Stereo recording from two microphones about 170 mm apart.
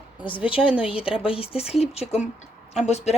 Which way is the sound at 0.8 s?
35° left (ahead or behind).